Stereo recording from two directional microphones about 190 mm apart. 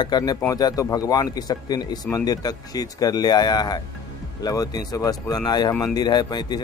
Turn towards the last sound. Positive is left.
turn(degrees=20)  # may be behind; listen again after turning